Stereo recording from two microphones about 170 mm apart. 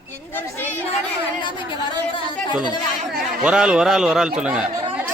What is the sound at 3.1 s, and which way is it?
Speech, 5° right (ahead or behind).